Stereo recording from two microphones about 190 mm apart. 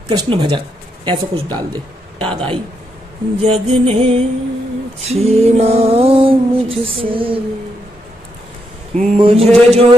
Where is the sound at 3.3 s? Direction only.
30° right (ahead or behind).